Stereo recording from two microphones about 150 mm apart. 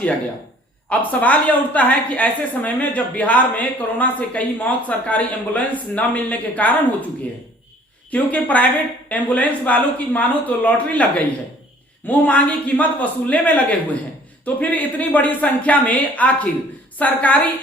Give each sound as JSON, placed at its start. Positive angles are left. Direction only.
{"t": 0.9, "sound": "a woman's voice", "side_deg": 10}
{"t": 8.1, "sound": "a woman's voice", "side_deg": 10}